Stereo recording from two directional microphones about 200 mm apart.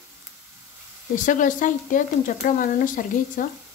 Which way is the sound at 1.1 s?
40° left (ahead or behind).